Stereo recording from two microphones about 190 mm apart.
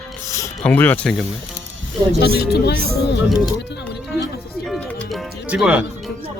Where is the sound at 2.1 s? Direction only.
55° left (ahead or behind).